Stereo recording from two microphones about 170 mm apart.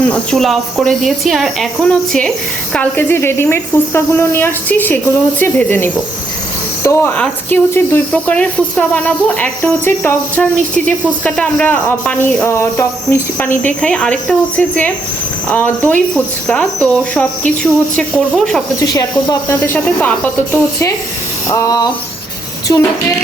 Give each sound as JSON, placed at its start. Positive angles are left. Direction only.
{"t": 0.0, "sound": "speech", "side_deg": 5}
{"t": 18.8, "sound": "speech", "side_deg": 20}
{"t": 19.5, "sound": "speech", "side_deg": 10}
{"t": 21.5, "sound": "speech", "side_deg": 20}